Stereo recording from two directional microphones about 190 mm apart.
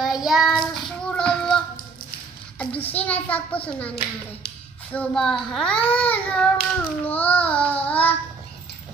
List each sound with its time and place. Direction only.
0.0 s child singing: centre (ahead or behind)
3.0 s a child's voice: 10° left (ahead or behind)
4.9 s a child's voice: 5° left (ahead or behind)